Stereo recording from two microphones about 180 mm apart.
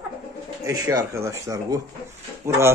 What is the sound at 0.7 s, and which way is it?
Speech, 20° right (ahead or behind).